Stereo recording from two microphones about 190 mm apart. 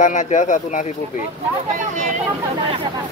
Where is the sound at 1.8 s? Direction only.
40° right (ahead or behind).